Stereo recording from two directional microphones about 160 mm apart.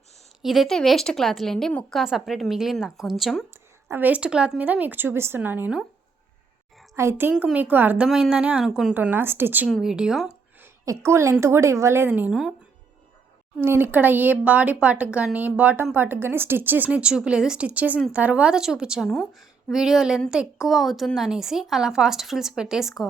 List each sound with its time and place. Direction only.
0.4 s a woman's voice: centre (ahead or behind)
3.8 s speech: 10° right (ahead or behind)
6.9 s speech: 15° right (ahead or behind)
9.6 s a woman's voice: centre (ahead or behind)
10.8 s speech: 15° right (ahead or behind)
13.6 s a woman's voice: 15° right (ahead or behind)